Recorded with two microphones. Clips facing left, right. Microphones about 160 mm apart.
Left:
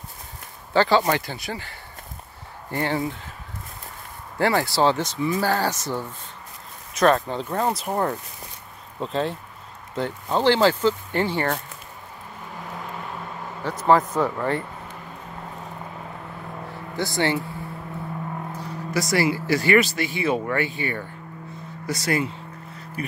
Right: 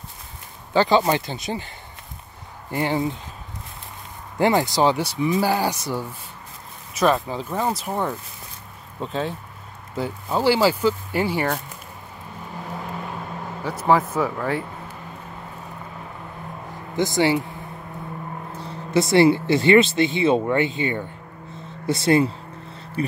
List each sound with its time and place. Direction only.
0.7 s speech: 20° right (ahead or behind)
4.4 s speech: 20° right (ahead or behind)
13.7 s speech: 10° right (ahead or behind)
16.9 s speech: 20° right (ahead or behind)
18.6 s speech: 25° right (ahead or behind)